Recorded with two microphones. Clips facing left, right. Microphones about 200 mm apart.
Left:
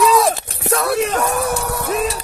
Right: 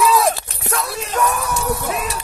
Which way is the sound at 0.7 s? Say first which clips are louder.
Left 4 dB; 60° left (ahead or behind).